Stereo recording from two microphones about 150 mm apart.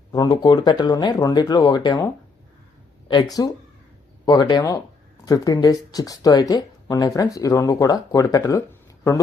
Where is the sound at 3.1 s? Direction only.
30° left (ahead or behind).